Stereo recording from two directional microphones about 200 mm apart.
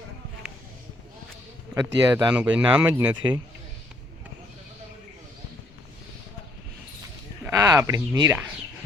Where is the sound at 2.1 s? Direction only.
5° right (ahead or behind).